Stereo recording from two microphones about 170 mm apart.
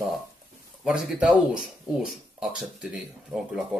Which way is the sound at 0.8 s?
5° right (ahead or behind).